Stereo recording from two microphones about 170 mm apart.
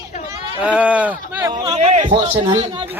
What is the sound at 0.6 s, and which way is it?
Speech, 10° right (ahead or behind).